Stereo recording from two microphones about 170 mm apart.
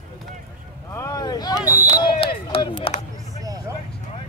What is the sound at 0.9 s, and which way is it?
Vehicle, 20° left (ahead or behind).